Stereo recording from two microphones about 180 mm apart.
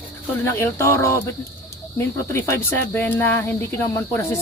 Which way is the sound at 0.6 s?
15° left (ahead or behind).